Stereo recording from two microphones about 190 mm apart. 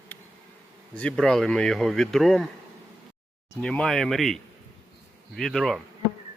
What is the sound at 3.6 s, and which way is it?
Speech, 5° left (ahead or behind).